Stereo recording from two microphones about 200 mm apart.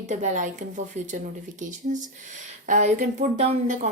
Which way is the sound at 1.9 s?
40° right (ahead or behind).